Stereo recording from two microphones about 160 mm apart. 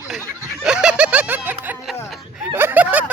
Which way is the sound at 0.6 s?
5° right (ahead or behind).